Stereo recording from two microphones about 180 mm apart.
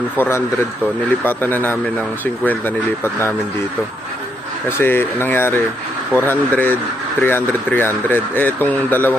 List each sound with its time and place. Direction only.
0.2 s speech: 15° left (ahead or behind)
4.8 s speech: 10° left (ahead or behind)